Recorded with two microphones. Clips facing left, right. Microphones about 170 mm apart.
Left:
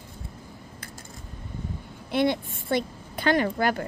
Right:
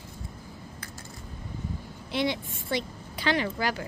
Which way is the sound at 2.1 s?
50° left (ahead or behind).